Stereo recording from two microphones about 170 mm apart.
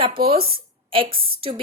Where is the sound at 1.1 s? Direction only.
60° right (ahead or behind).